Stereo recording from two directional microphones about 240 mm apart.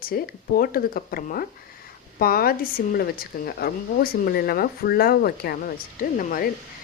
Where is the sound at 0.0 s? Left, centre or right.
Left.